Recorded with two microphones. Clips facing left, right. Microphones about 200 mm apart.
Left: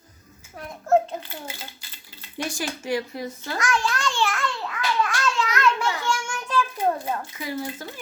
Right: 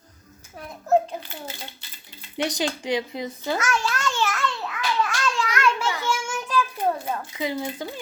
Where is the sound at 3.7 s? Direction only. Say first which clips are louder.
Left 1 dB; 5° right (ahead or behind).